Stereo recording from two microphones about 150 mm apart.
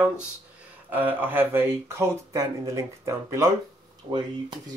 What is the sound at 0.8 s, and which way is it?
Speech, 10° right (ahead or behind).